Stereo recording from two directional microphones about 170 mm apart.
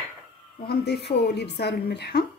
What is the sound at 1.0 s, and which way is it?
A woman's voice, 80° left.